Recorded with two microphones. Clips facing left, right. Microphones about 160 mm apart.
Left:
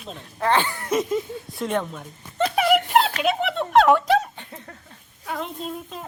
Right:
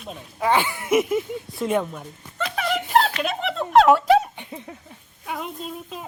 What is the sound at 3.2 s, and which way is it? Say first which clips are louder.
Speech: left 3 dB; centre (ahead or behind).